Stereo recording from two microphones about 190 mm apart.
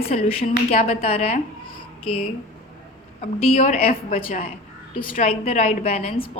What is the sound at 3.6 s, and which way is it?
Speech, 45° left (ahead or behind).